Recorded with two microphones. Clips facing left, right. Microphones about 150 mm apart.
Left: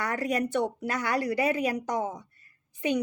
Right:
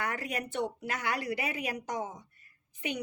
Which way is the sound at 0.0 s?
40° left (ahead or behind).